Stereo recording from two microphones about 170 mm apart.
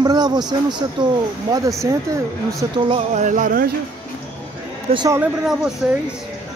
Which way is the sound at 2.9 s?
40° right (ahead or behind).